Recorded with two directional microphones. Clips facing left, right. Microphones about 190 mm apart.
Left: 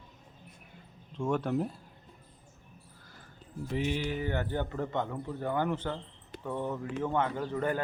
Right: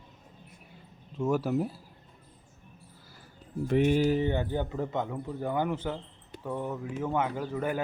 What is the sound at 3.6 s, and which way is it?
Speech, 55° right (ahead or behind).